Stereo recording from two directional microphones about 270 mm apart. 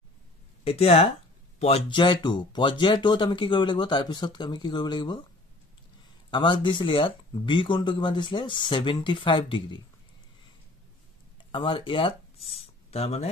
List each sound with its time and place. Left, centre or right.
0.7 s speech: left
6.3 s speech: centre
11.5 s speech: centre